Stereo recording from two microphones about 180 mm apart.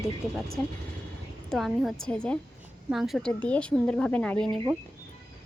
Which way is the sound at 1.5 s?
Centre (ahead or behind).